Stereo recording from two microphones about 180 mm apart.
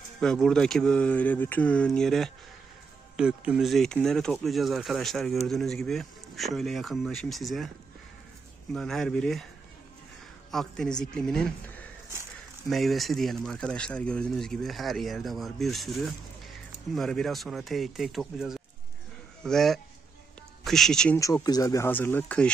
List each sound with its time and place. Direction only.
0.2 s speech: 5° left (ahead or behind)
8.7 s speech: centre (ahead or behind)
10.5 s speech: centre (ahead or behind)
12.6 s speech: centre (ahead or behind)
21.2 s speech: 20° left (ahead or behind)